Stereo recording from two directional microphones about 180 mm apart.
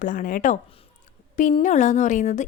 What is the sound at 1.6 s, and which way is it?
Speech, 40° left (ahead or behind).